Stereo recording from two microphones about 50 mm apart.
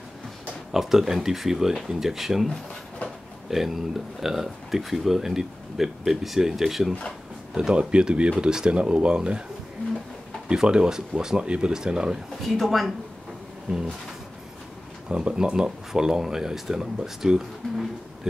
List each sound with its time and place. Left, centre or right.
0.7 s speech: centre
7.5 s speech: centre
10.5 s speech: centre
12.4 s speech: centre
15.0 s speech: centre